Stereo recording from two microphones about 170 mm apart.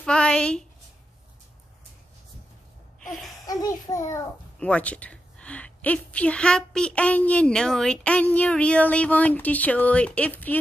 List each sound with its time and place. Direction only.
0.0 s a woman's voice: 5° left (ahead or behind)
3.4 s a child's voice: 20° left (ahead or behind)
4.6 s a woman's voice: 10° left (ahead or behind)